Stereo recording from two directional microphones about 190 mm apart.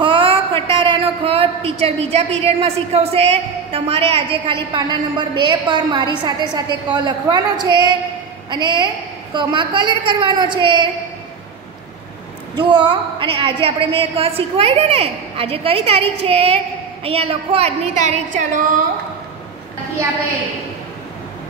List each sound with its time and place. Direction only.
0.0 s a man's voice: 30° right (ahead or behind)
12.5 s a woman's voice: 25° right (ahead or behind); by 18.6 s 40° right (ahead or behind)